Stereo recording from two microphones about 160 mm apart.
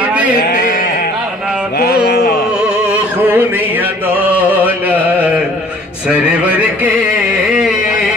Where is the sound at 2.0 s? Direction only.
75° left (ahead or behind).